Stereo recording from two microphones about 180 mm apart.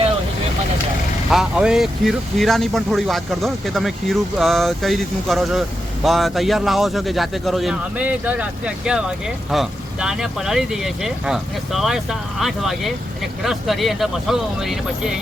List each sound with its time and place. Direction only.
1.3 s speech: 5° right (ahead or behind)